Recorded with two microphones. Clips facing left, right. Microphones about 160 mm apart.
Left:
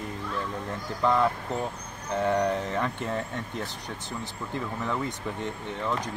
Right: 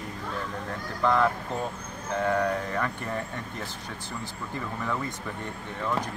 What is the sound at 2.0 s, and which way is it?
Speech, 20° left (ahead or behind).